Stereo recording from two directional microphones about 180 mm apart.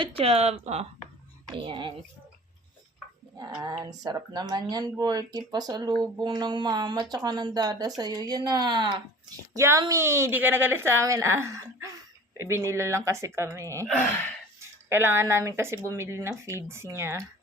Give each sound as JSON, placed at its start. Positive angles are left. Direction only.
{"t": 0.0, "sound": "speech", "side_deg": -30}
{"t": 3.8, "sound": "a woman's voice", "side_deg": -20}